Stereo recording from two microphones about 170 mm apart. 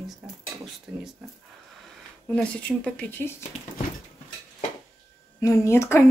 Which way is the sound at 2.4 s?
5° left (ahead or behind).